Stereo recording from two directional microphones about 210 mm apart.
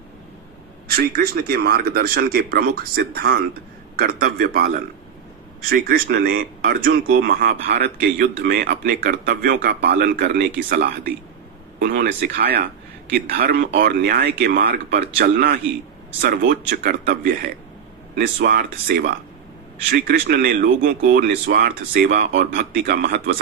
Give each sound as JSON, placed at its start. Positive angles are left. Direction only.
{"t": 0.9, "sound": "speech", "side_deg": -45}